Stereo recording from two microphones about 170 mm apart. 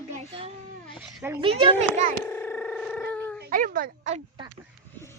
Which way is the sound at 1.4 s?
30° right (ahead or behind).